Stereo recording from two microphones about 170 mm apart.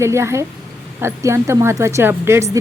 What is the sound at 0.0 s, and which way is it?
A woman's voice, 15° right (ahead or behind).